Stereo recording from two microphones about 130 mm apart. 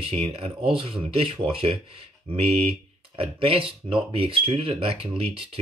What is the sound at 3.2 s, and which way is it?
Speech, 45° right (ahead or behind).